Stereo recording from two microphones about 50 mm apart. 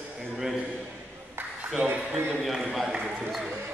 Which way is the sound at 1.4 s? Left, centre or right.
Right.